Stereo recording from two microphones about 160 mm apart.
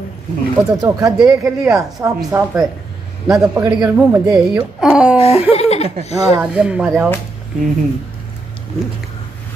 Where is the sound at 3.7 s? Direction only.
20° right (ahead or behind).